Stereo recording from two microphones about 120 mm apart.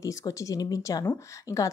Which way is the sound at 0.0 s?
30° left (ahead or behind).